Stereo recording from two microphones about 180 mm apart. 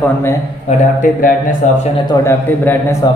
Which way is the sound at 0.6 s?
45° left (ahead or behind).